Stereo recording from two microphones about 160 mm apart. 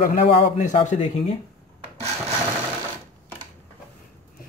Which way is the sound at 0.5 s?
50° left (ahead or behind).